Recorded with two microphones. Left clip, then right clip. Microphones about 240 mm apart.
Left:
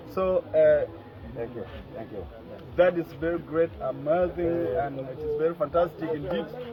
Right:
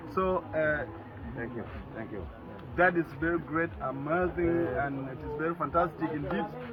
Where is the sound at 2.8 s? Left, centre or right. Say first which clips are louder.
Left 3 dB; left.